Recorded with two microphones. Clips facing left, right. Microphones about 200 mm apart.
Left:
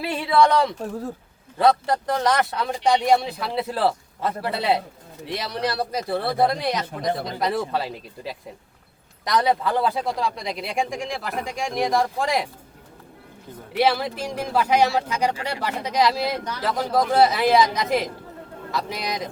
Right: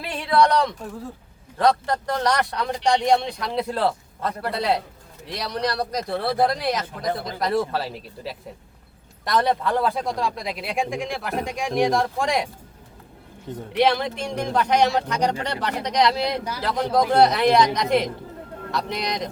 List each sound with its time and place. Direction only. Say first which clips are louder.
0.0 s a sound: left 1 dB; 5° left (ahead or behind)
1.5 s a man's voice: left 1 dB; 5° left (ahead or behind)
13.7 s a man's voice: right 1 dB; 5° left (ahead or behind)